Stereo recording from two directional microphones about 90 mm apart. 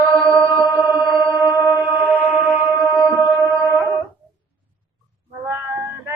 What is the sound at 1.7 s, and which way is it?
Music, 15° left (ahead or behind).